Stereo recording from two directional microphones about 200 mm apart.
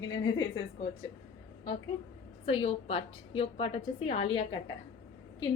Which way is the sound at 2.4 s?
30° left (ahead or behind).